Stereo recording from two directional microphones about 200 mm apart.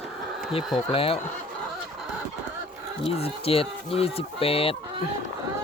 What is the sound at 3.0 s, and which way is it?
Speech, 30° left (ahead or behind).